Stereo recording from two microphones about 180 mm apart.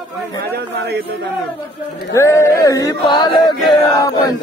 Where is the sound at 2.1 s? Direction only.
15° left (ahead or behind).